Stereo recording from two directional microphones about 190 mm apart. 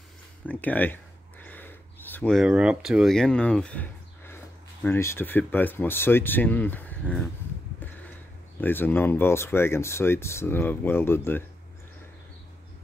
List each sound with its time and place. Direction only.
0.5 s speech: 10° left (ahead or behind)
1.4 s a sound: 10° left (ahead or behind)
4.8 s speech: 15° left (ahead or behind)
8.5 s speech: 10° left (ahead or behind)